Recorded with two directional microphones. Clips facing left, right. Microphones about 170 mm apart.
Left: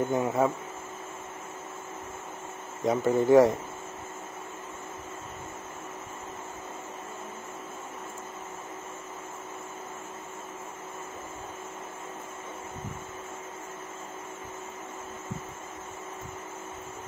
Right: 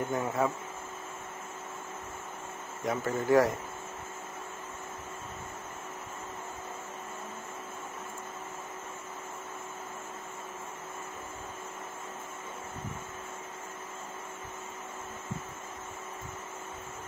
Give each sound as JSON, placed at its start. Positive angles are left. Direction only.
{"t": 0.1, "sound": "speech", "side_deg": 20}
{"t": 2.8, "sound": "speech", "side_deg": 20}